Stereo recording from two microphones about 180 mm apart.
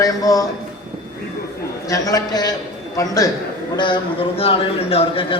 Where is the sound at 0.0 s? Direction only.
20° left (ahead or behind).